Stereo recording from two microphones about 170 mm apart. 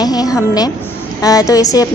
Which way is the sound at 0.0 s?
20° left (ahead or behind).